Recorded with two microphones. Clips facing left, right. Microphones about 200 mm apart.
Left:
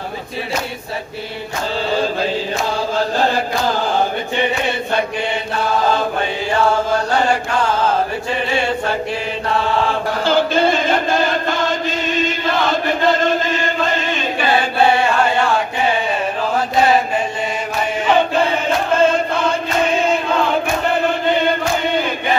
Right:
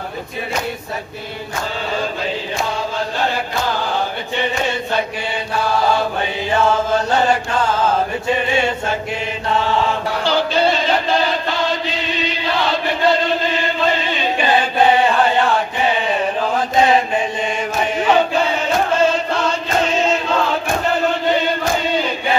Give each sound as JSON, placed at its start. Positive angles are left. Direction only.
{"t": 10.2, "sound": "chant", "side_deg": 50}
{"t": 19.1, "sound": "chant", "side_deg": 55}